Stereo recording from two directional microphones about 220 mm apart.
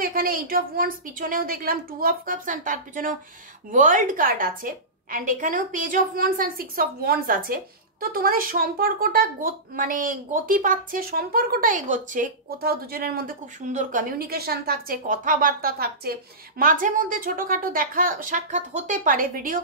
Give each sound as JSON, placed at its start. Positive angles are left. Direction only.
{"t": 0.0, "sound": "a woman's voice", "side_deg": -40}